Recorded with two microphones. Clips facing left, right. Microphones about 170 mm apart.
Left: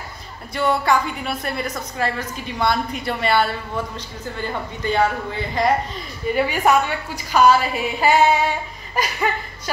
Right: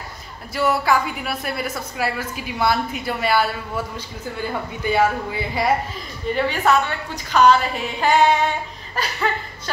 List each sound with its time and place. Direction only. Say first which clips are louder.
0.6 s a woman's voice: even; 5° right (ahead or behind)
6.3 s female singing: left 1 dB; 10° left (ahead or behind)